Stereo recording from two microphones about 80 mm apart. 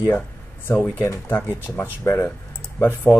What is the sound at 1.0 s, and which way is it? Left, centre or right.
Speech, left.